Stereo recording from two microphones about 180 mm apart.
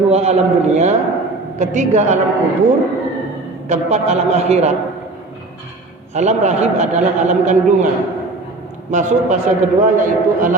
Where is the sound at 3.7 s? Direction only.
40° right (ahead or behind).